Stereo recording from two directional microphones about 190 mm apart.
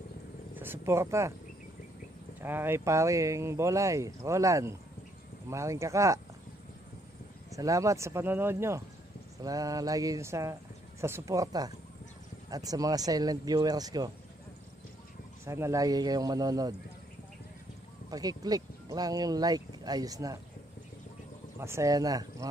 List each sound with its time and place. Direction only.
0.6 s speech: 10° right (ahead or behind)
2.4 s speech: 10° right (ahead or behind)
7.5 s speech: 15° right (ahead or behind)
15.4 s speech: 15° right (ahead or behind)
18.1 s speech: 20° right (ahead or behind)
21.5 s speech: 15° right (ahead or behind)